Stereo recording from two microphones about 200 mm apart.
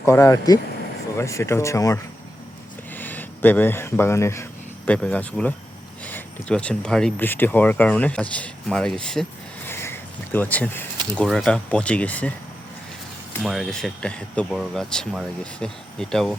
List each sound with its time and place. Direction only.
0.0 s speech: 15° left (ahead or behind)
9.6 s a sound: 10° left (ahead or behind)
11.1 s speech: centre (ahead or behind)
13.4 s speech: centre (ahead or behind)